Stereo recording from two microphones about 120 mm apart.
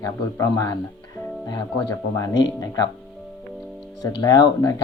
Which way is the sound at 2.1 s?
30° left (ahead or behind).